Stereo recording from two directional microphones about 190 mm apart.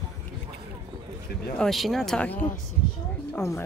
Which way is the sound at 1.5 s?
Centre (ahead or behind).